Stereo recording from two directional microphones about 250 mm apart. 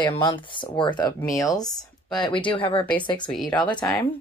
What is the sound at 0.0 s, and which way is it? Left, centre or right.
Speech, centre.